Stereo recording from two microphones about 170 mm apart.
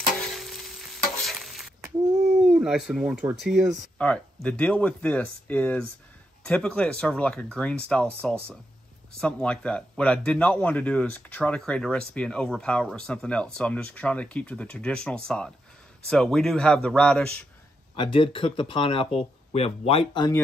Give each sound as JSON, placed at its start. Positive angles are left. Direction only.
{"t": 0.4, "sound": "stir", "side_deg": 0}
{"t": 2.4, "sound": "speech", "side_deg": -5}
{"t": 17.9, "sound": "speech", "side_deg": 30}